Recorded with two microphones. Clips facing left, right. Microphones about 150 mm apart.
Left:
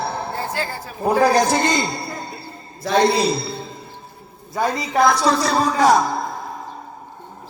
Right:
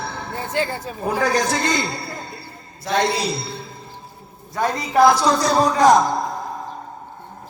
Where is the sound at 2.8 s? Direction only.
35° left (ahead or behind).